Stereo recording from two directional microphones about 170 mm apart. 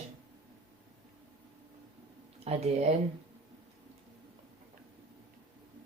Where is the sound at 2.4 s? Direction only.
35° right (ahead or behind).